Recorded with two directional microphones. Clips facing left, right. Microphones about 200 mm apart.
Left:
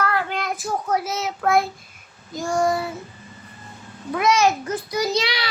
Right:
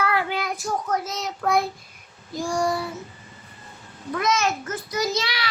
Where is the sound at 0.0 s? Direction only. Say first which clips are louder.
Even; 10° right (ahead or behind).